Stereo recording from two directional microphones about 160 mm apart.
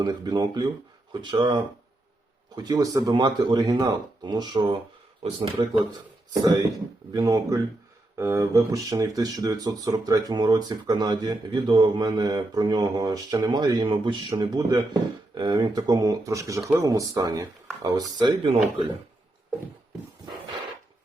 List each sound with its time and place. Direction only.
0.0 s speech: 25° right (ahead or behind)